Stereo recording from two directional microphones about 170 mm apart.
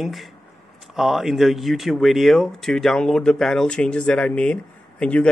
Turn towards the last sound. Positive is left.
turn(degrees=5)  # may be behind; listen again after turning